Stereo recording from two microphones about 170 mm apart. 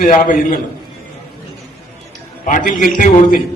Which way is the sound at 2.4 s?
50° left (ahead or behind).